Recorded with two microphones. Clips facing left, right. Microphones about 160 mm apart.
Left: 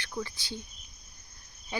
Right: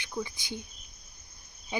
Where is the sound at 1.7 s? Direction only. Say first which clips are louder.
Right 2 dB; 15° right (ahead or behind).